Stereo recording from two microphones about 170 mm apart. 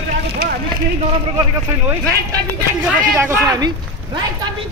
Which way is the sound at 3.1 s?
15° right (ahead or behind).